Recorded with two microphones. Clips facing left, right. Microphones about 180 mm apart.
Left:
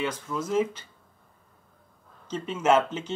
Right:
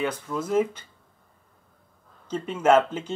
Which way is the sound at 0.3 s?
50° right (ahead or behind).